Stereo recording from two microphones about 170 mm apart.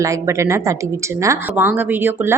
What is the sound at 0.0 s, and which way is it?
Speech, 15° right (ahead or behind).